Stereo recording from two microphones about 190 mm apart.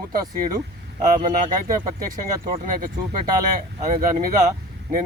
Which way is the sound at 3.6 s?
40° right (ahead or behind).